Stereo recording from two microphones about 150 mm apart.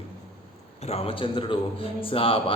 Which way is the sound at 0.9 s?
40° left (ahead or behind).